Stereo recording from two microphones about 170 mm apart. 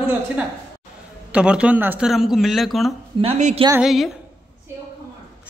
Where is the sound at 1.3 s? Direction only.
5° right (ahead or behind).